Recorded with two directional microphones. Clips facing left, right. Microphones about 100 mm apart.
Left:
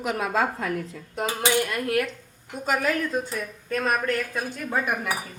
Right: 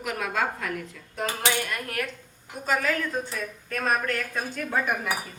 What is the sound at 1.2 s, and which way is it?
Speech, 20° left (ahead or behind).